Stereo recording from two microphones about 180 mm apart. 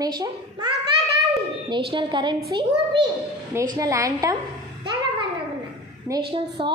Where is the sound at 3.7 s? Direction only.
20° right (ahead or behind).